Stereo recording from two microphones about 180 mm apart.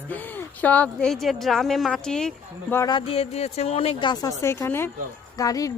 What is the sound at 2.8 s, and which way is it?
A man's voice, 25° left (ahead or behind).